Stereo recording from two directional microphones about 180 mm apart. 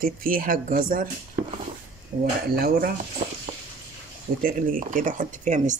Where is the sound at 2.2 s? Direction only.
55° right (ahead or behind).